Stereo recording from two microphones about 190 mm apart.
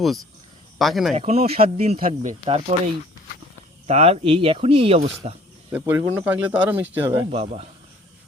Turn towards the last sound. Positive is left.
turn(degrees=-35)  # may be behind; listen again after turning